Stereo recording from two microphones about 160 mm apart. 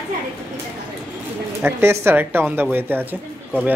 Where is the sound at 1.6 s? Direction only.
15° right (ahead or behind).